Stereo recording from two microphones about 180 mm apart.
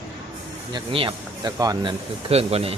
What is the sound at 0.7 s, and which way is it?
Speech, 30° right (ahead or behind).